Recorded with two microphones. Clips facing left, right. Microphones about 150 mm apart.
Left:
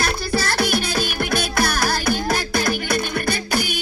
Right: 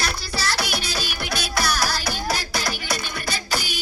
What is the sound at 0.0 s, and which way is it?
Music, 50° left (ahead or behind).